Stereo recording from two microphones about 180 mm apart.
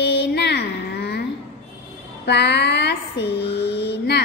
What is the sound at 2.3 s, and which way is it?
A woman's voice, 70° left (ahead or behind).